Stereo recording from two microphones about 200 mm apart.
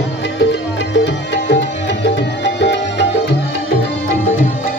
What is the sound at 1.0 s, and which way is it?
Music, 60° left (ahead or behind).